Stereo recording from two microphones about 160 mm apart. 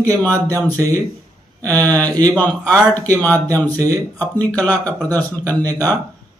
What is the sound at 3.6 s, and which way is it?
Speech, 20° right (ahead or behind).